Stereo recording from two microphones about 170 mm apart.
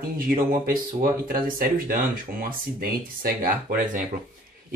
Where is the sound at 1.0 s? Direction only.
60° right (ahead or behind).